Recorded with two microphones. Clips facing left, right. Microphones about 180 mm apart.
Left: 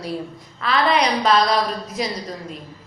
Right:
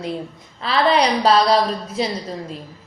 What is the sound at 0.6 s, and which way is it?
A woman's voice, 30° right (ahead or behind).